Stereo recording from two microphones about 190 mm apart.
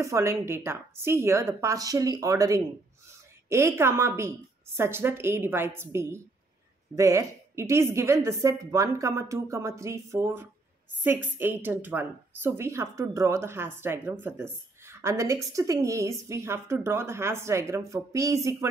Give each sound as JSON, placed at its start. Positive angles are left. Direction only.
{"t": 0.0, "sound": "a woman's voice", "side_deg": -15}